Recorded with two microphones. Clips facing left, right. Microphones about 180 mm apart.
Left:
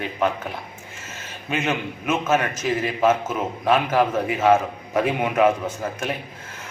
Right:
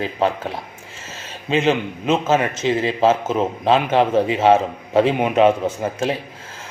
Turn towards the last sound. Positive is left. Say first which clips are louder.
# right 1 dB
turn(degrees=-30)  # may be behind; listen again after turning